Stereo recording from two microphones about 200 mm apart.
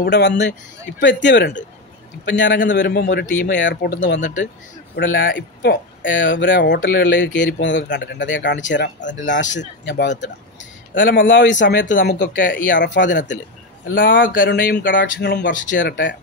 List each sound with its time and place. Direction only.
0.0 s speech: 60° left (ahead or behind)
11.9 s speech: 45° left (ahead or behind)
12.6 s speech: 65° left (ahead or behind)
13.8 s speech: 45° left (ahead or behind); by 15.9 s 65° left (ahead or behind)